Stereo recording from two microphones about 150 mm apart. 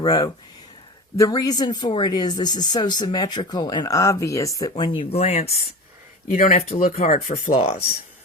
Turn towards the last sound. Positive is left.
turn(degrees=40)  # may be behind; listen again after turning